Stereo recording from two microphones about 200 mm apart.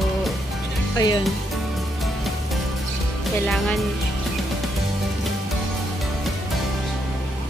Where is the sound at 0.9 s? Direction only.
20° left (ahead or behind).